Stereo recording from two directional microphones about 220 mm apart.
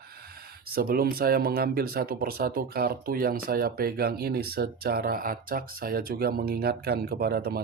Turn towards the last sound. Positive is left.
turn(degrees=-45)  # may be behind; listen again after turning